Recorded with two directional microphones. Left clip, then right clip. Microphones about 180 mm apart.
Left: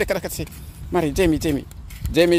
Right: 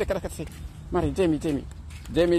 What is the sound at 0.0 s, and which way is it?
Speech, 15° left (ahead or behind).